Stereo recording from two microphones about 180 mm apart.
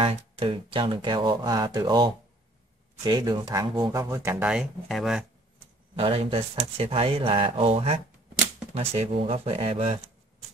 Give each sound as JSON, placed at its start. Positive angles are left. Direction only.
{"t": 0.0, "sound": "speech", "side_deg": -30}
{"t": 4.5, "sound": "speech", "side_deg": 0}
{"t": 5.9, "sound": "speech", "side_deg": -30}